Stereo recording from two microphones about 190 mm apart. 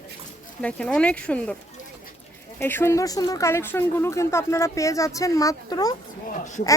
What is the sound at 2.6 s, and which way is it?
Speech, 10° left (ahead or behind).